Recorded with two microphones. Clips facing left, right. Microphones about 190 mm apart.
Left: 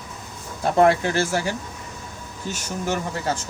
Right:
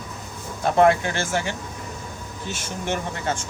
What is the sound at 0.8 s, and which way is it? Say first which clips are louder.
Speech: left 1 dB; 35° left (ahead or behind).